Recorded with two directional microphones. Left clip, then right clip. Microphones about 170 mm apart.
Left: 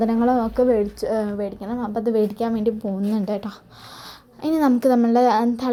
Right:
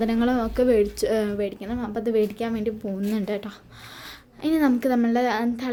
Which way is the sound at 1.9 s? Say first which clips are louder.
Left 2 dB; 5° left (ahead or behind).